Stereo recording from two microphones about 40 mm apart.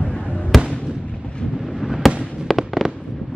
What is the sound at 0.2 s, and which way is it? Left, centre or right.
Fireworks, left.